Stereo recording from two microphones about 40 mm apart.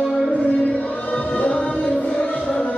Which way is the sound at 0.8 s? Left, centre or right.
Left.